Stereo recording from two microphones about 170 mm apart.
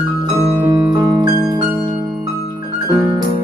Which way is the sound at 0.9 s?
25° right (ahead or behind).